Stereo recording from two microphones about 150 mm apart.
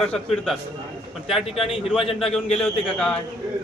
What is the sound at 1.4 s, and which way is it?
Speech, 40° left (ahead or behind).